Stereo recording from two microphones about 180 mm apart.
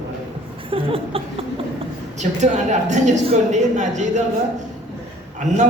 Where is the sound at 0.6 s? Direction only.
30° right (ahead or behind).